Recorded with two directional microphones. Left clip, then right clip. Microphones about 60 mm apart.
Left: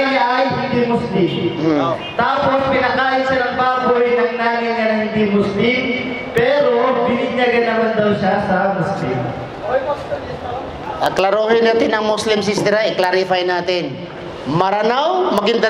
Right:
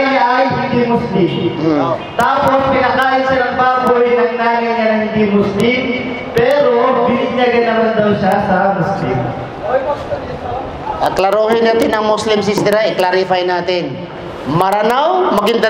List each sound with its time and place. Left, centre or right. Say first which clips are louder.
0.0 s music: right 3 dB; left
1.1 s a man's voice: right 3 dB; centre
11.0 s a man's voice: right 3 dB; centre